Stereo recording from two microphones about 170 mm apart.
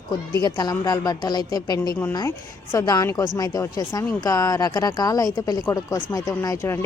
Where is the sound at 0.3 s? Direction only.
25° left (ahead or behind).